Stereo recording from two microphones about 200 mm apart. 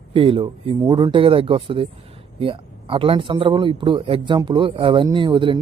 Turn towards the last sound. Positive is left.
turn(degrees=-25)  # may be behind; listen again after turning